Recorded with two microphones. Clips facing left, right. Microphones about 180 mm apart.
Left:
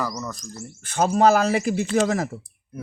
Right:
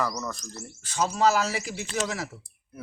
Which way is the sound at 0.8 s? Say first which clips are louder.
Left 6 dB; 55° left (ahead or behind).